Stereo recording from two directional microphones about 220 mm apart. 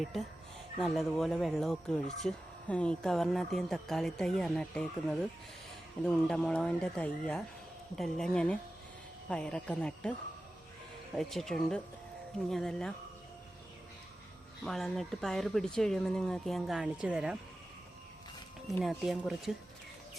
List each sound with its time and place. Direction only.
0.0 s speech: centre (ahead or behind)
14.6 s speech: centre (ahead or behind)
18.8 s speech: centre (ahead or behind)